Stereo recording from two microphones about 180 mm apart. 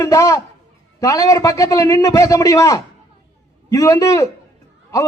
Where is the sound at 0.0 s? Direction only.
20° left (ahead or behind).